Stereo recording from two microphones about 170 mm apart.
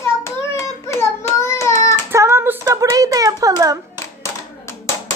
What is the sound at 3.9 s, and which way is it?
Clapping, 15° left (ahead or behind).